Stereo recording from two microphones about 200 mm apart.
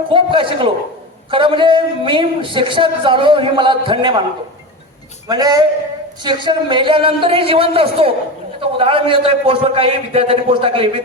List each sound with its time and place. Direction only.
0.1 s speech: 25° right (ahead or behind)
5.3 s speech: 20° right (ahead or behind)